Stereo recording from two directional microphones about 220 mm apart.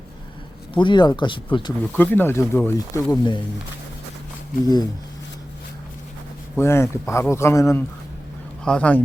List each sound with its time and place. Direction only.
0.7 s speech: 20° left (ahead or behind)
1.8 s speech: 10° left (ahead or behind)
6.6 s speech: 10° left (ahead or behind)